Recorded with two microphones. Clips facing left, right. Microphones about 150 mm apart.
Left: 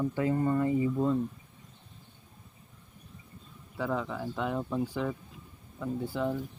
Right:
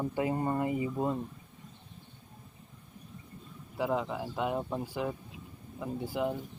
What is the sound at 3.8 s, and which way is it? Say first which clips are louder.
Speech: right 1 dB; 15° right (ahead or behind).